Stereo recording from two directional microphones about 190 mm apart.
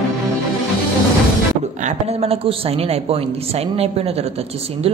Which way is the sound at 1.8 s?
35° right (ahead or behind).